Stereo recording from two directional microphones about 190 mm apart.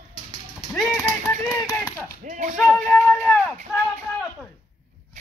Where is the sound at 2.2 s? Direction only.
40° right (ahead or behind).